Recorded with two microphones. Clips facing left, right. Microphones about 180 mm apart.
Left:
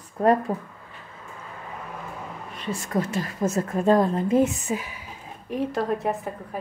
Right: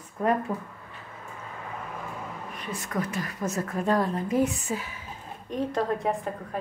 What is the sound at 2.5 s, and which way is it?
A woman's voice, 25° left (ahead or behind).